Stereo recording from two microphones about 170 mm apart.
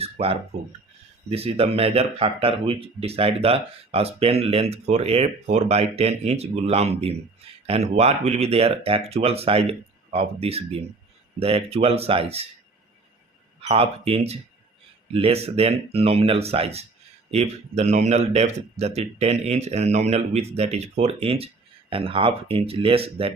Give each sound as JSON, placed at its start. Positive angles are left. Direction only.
{"t": 0.0, "sound": "a sound", "side_deg": -35}
{"t": 1.3, "sound": "speech", "side_deg": -35}
{"t": 13.6, "sound": "speech", "side_deg": -35}